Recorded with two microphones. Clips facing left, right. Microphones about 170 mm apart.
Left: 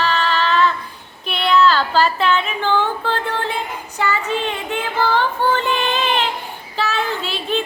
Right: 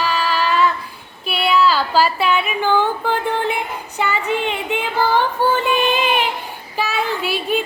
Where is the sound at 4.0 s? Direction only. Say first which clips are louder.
Right 1 dB; 15° right (ahead or behind).